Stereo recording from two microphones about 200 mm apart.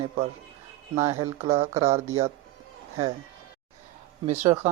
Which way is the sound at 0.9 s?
30° right (ahead or behind).